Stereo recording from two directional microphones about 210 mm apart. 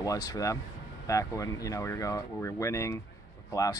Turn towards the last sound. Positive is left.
turn(degrees=15)  # may be behind; listen again after turning